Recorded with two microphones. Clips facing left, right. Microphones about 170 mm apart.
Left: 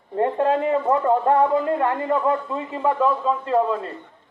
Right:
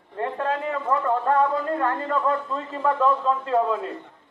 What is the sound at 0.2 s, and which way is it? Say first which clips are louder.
A man's voice: left 6 dB; 25° left (ahead or behind).